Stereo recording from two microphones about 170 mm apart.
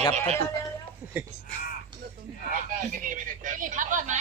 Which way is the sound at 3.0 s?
50° right (ahead or behind).